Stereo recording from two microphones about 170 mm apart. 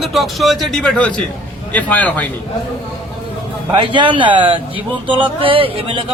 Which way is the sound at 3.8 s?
30° right (ahead or behind).